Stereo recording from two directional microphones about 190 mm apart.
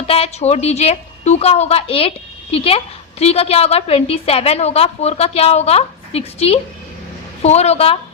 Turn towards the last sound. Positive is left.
turn(degrees=30)  # may be behind; listen again after turning